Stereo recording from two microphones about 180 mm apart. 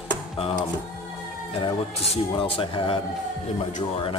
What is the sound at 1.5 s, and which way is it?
Speech, 30° left (ahead or behind).